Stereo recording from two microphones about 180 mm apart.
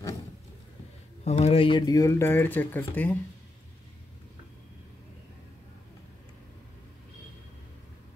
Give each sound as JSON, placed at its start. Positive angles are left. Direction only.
{"t": 1.2, "sound": "speech", "side_deg": 35}